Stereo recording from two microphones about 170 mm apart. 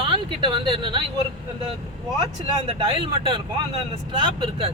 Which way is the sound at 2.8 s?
30° right (ahead or behind).